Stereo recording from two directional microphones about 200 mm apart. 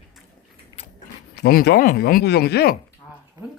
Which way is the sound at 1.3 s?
50° left (ahead or behind).